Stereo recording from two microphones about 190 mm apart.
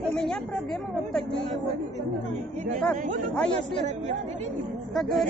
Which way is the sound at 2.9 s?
10° left (ahead or behind).